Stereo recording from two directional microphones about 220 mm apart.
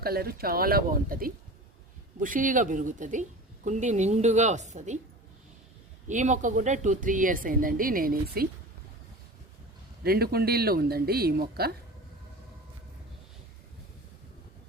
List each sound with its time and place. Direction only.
0.0 s a woman's voice: 45° right (ahead or behind)
6.1 s a woman's voice: 35° right (ahead or behind)
10.0 s speech: 45° right (ahead or behind)